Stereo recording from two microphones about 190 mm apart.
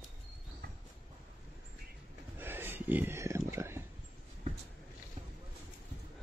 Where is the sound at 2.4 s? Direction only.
10° right (ahead or behind).